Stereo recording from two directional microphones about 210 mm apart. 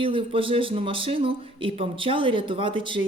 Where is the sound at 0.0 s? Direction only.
25° right (ahead or behind).